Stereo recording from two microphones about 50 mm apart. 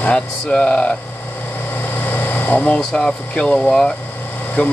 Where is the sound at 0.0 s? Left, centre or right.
Left.